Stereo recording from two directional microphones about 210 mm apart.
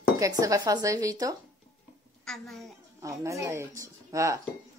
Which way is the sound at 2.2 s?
Centre (ahead or behind).